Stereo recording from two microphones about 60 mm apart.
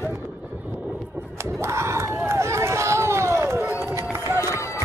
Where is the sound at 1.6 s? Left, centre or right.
Right.